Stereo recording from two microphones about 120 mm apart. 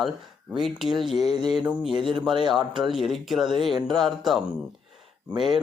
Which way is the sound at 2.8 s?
Centre (ahead or behind).